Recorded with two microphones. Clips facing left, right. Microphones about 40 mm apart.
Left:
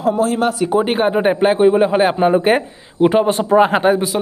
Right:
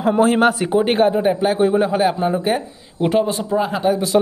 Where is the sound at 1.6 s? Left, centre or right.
Centre.